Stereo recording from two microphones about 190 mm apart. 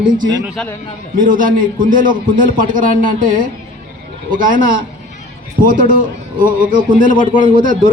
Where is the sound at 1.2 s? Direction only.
45° right (ahead or behind).